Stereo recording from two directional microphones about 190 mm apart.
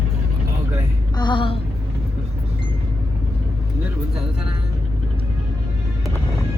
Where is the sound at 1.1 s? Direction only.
25° left (ahead or behind).